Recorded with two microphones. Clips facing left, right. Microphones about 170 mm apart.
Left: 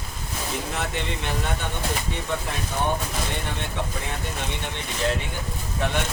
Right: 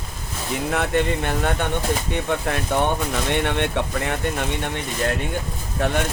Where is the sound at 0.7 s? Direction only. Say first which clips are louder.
Right 8 dB; 55° right (ahead or behind).